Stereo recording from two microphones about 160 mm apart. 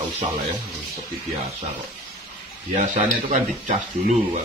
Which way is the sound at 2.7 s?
50° right (ahead or behind).